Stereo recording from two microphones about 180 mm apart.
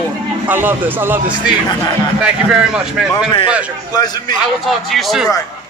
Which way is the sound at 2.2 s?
5° right (ahead or behind).